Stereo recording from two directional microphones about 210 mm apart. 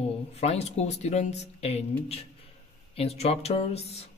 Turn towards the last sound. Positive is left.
turn(degrees=30)  # may be behind; listen again after turning